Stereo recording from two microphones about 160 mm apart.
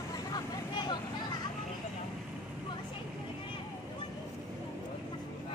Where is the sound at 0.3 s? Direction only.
25° left (ahead or behind).